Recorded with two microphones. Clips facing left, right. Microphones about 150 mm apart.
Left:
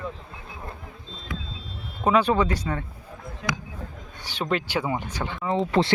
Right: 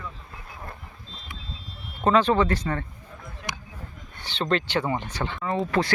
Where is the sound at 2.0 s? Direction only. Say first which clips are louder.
Right 1 dB; 10° left (ahead or behind).